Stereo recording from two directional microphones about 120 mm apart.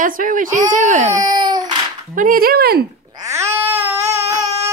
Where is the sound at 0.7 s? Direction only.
90° right.